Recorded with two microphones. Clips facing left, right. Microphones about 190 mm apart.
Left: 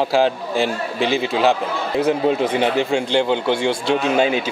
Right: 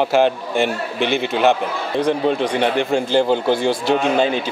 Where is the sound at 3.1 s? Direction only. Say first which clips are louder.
Right 3 dB; 5° right (ahead or behind).